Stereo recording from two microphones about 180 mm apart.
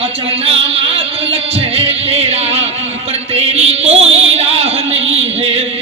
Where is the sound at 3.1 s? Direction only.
35° right (ahead or behind).